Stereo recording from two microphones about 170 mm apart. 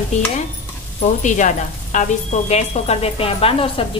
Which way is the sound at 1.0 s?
45° left (ahead or behind).